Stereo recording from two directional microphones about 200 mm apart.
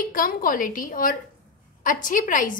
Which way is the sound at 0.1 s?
45° left (ahead or behind).